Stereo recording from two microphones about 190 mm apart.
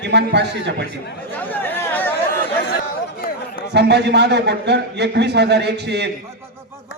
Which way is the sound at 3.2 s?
50° left (ahead or behind).